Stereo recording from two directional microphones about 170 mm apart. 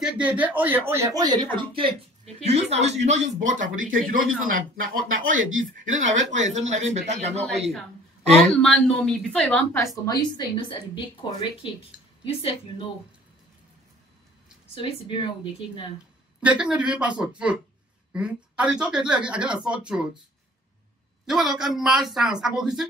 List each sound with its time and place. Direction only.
0.0 s speech: 10° right (ahead or behind); by 7.4 s 40° right (ahead or behind)
8.4 s speech: 5° left (ahead or behind)
10.0 s a woman's voice: 25° left (ahead or behind)
11.9 s a sound: 5° right (ahead or behind)
12.3 s speech: 35° left (ahead or behind)
14.8 s speech: 30° left (ahead or behind)
16.3 s speech: 5° right (ahead or behind)
21.3 s speech: centre (ahead or behind)